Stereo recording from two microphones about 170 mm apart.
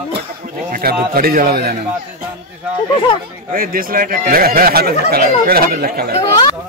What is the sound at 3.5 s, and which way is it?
Speech, 55° right (ahead or behind).